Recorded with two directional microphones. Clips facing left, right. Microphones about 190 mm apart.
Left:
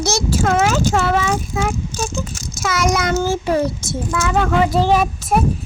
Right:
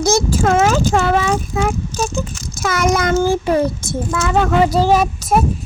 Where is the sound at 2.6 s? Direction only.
55° right (ahead or behind).